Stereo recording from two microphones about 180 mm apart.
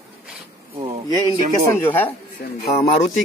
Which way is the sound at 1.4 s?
50° right (ahead or behind).